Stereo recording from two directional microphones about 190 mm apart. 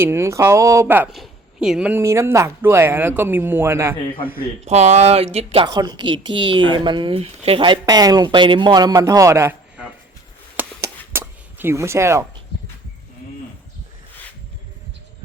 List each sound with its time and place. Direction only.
0.0 s speech: 15° right (ahead or behind)
4.6 s a woman's voice: 35° right (ahead or behind); by 9.9 s 10° right (ahead or behind)
10.6 s a sound: 15° right (ahead or behind)